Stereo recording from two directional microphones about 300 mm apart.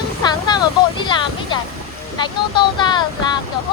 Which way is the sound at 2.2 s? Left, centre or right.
Centre.